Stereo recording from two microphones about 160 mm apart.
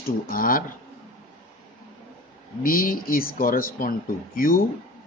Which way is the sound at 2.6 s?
65° left (ahead or behind).